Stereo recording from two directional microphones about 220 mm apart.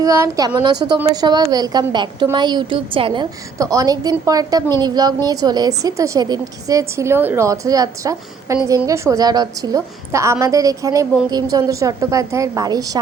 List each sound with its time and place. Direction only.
0.0 s a woman's voice: 15° right (ahead or behind)